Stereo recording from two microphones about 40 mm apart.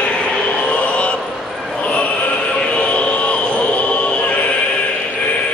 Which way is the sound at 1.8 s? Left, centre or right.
Left.